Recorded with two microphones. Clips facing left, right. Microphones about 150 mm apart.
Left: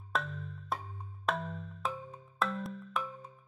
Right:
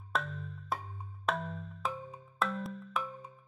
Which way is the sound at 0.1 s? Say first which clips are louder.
Even; centre (ahead or behind).